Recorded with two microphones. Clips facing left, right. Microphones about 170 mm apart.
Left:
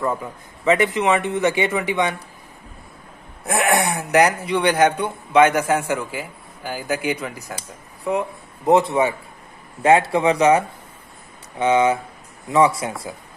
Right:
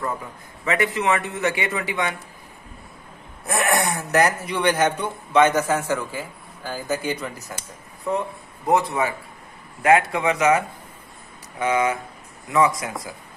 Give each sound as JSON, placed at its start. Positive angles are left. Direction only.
{"t": 0.7, "sound": "a man's voice", "side_deg": 20}
{"t": 3.5, "sound": "a man's voice", "side_deg": 15}
{"t": 8.6, "sound": "a man's voice", "side_deg": 25}